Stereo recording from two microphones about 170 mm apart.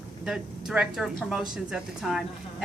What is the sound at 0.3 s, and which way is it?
A woman's voice, 5° right (ahead or behind).